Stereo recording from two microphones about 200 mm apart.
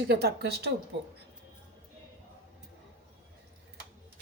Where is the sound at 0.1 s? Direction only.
55° right (ahead or behind).